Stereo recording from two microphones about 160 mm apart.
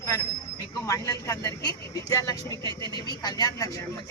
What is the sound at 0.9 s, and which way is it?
A man's voice, 20° left (ahead or behind).